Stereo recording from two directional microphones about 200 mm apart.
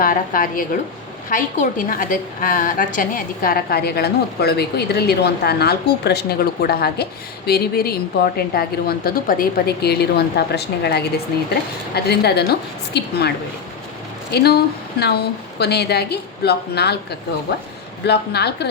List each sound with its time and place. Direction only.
0.0 s a woman's voice: 45° left (ahead or behind)